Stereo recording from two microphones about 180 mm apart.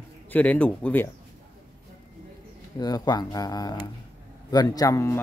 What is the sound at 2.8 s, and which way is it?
Speech, 20° left (ahead or behind).